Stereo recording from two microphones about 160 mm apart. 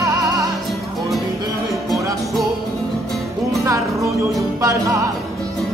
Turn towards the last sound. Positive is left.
turn(degrees=-20)  # may be behind; listen again after turning